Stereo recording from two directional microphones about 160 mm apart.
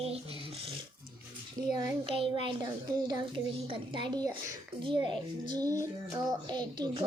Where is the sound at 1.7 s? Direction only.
30° right (ahead or behind).